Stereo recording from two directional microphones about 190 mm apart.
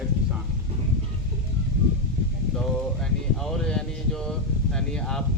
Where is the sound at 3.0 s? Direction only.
5° left (ahead or behind).